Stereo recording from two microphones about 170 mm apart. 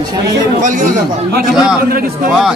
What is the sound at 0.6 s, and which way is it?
Speech, 50° right (ahead or behind).